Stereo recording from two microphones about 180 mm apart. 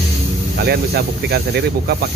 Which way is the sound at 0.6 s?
60° right (ahead or behind).